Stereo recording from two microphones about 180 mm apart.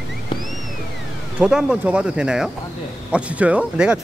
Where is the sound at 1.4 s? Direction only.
5° right (ahead or behind).